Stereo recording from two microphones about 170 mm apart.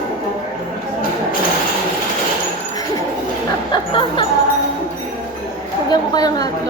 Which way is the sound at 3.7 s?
30° left (ahead or behind).